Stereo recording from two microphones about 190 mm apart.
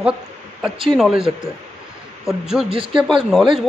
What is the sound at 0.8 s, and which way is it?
Speech, centre (ahead or behind).